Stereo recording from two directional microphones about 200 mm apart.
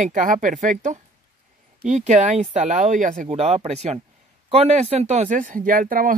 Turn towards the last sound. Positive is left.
turn(degrees=-45)  # may be behind; listen again after turning